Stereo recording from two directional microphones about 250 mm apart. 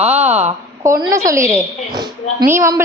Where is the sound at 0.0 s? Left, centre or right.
Right.